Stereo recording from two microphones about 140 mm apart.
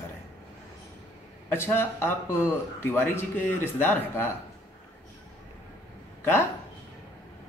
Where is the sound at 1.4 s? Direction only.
15° left (ahead or behind).